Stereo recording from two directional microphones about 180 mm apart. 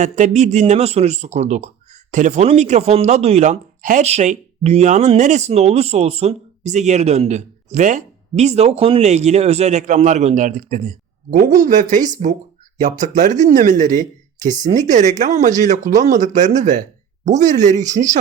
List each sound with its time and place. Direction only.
0.0 s speech: 40° right (ahead or behind)